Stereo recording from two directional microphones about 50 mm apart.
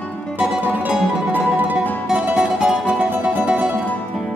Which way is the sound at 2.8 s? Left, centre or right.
Right.